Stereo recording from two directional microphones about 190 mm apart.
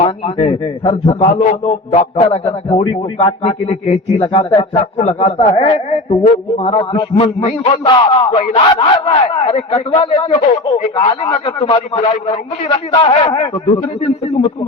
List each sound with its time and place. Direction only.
0.0 s a man's voice: 30° left (ahead or behind)
1.3 s speech: 40° left (ahead or behind)
13.3 s speech: 35° left (ahead or behind)